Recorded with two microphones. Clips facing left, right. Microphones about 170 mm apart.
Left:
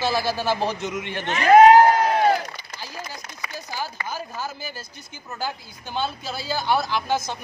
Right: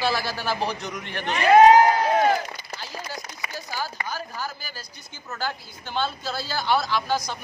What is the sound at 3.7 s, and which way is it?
Speech, 20° left (ahead or behind).